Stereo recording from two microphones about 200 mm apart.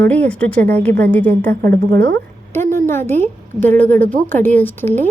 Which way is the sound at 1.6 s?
50° right (ahead or behind).